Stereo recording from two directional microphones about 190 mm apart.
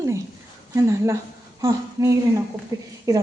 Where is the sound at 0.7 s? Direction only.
15° right (ahead or behind).